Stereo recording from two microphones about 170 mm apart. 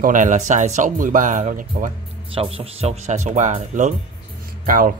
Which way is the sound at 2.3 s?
35° right (ahead or behind).